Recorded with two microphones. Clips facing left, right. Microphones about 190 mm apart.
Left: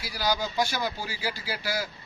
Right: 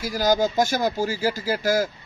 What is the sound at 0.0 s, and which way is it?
Speech, 45° right (ahead or behind).